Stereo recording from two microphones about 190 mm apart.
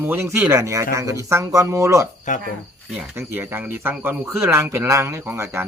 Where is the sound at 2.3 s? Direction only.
40° left (ahead or behind).